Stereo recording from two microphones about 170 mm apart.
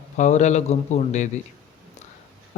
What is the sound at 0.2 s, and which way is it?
Speech, 45° left (ahead or behind).